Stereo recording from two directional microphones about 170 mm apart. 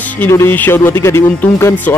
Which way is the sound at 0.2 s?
15° left (ahead or behind).